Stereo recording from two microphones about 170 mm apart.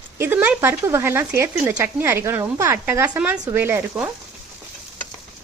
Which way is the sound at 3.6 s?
10° right (ahead or behind).